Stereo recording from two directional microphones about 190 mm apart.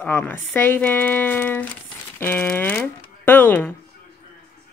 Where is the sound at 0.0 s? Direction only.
5° left (ahead or behind).